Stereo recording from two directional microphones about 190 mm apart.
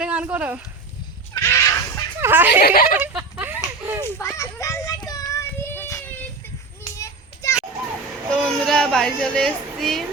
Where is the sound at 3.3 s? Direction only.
10° right (ahead or behind).